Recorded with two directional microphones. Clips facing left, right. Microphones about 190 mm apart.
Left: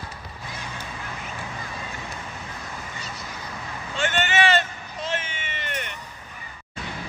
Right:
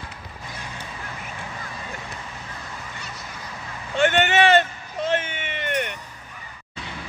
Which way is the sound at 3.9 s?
60° right (ahead or behind).